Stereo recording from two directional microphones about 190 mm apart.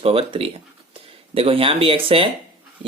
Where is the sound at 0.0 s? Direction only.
30° right (ahead or behind).